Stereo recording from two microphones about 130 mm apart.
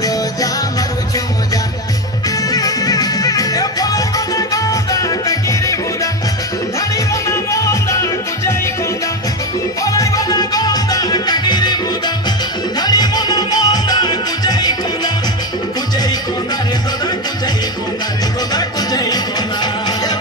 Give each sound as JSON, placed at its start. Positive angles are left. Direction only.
{"t": 2.5, "sound": "music", "side_deg": 30}
{"t": 7.2, "sound": "music", "side_deg": 25}
{"t": 9.9, "sound": "music", "side_deg": 30}
{"t": 12.8, "sound": "music", "side_deg": 30}
{"t": 18.5, "sound": "music", "side_deg": 30}